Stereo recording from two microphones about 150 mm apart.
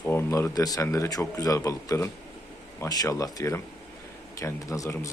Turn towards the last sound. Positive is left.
turn(degrees=20)  # may be behind; listen again after turning